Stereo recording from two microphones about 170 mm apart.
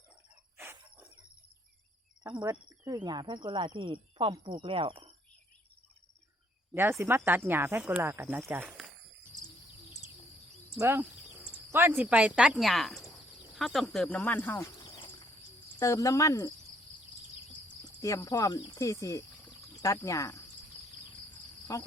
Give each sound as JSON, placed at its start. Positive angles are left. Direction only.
{"t": 0.5, "sound": "a sound", "side_deg": -10}
{"t": 2.2, "sound": "speech", "side_deg": -20}
{"t": 7.0, "sound": "speech", "side_deg": -15}
{"t": 10.8, "sound": "speech", "side_deg": -15}
{"t": 14.8, "sound": "insect", "side_deg": 30}
{"t": 15.8, "sound": "speech", "side_deg": 20}
{"t": 18.0, "sound": "speech", "side_deg": 20}
{"t": 21.7, "sound": "speech", "side_deg": 20}